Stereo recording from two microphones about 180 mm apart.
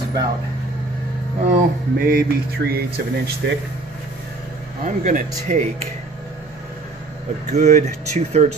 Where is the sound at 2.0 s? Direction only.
55° right (ahead or behind).